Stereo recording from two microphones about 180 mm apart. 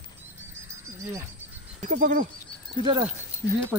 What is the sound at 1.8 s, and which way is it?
Speech, 45° right (ahead or behind).